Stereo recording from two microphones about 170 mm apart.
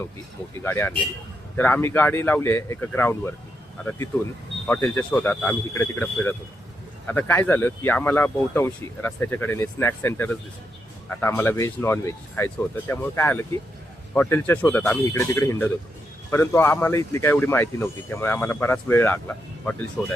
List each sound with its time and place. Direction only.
0.6 s speech: 15° left (ahead or behind)